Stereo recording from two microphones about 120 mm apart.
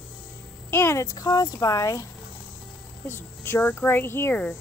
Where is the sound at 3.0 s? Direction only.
20° left (ahead or behind).